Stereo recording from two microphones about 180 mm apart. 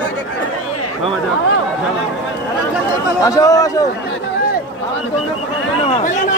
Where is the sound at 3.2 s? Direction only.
20° left (ahead or behind).